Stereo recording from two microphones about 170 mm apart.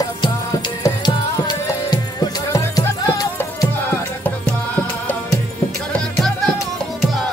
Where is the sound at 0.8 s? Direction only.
20° left (ahead or behind); by 6.5 s 5° left (ahead or behind).